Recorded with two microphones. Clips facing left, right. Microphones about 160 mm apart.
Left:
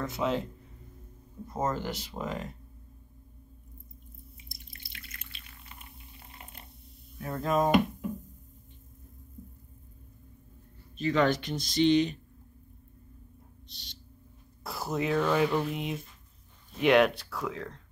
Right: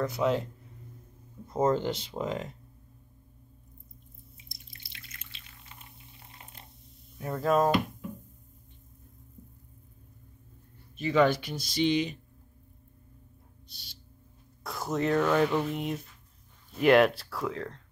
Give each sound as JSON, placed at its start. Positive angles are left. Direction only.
{"t": 0.0, "sound": "speech", "side_deg": 0}
{"t": 1.7, "sound": "speech", "side_deg": -25}
{"t": 4.7, "sound": "drip", "side_deg": 55}
{"t": 7.2, "sound": "speech", "side_deg": 0}
{"t": 11.1, "sound": "speech", "side_deg": -5}
{"t": 13.7, "sound": "owl", "side_deg": -5}
{"t": 14.6, "sound": "speech", "side_deg": 5}